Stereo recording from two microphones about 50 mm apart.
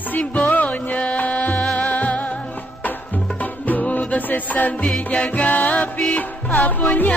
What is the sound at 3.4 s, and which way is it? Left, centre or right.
Music, left.